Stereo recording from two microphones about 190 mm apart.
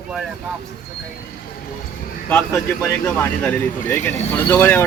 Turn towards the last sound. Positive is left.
turn(degrees=10)  # may be behind; listen again after turning